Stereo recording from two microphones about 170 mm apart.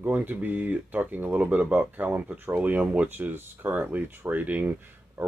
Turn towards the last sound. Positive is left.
turn(degrees=-10)  # may be behind; listen again after turning